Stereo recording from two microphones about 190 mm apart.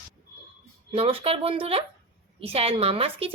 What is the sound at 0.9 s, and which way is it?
A woman's voice, 30° right (ahead or behind).